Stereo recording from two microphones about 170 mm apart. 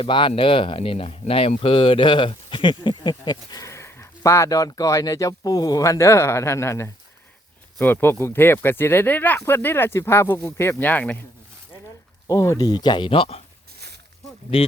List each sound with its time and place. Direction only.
0.0 s speech: 30° left (ahead or behind); by 11.2 s 10° left (ahead or behind)
12.3 s speech: 20° left (ahead or behind)